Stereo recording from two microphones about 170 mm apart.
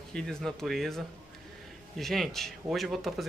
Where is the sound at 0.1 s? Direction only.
5° left (ahead or behind).